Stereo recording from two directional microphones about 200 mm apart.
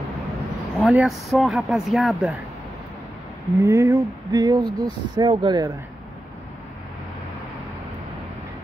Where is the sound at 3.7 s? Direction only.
15° right (ahead or behind).